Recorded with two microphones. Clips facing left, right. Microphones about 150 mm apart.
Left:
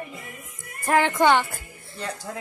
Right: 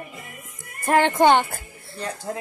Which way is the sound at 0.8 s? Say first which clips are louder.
Right 2 dB; 30° right (ahead or behind).